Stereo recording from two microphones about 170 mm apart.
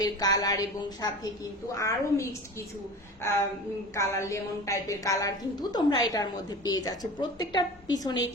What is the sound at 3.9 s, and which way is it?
A woman's voice, 15° left (ahead or behind).